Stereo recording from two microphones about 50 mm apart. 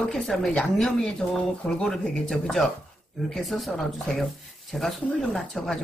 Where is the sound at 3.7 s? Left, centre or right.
Centre.